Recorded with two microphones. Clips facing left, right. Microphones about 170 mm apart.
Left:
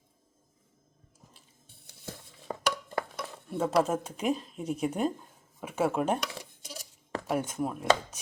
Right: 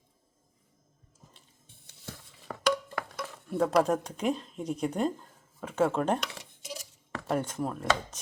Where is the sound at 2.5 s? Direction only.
25° left (ahead or behind).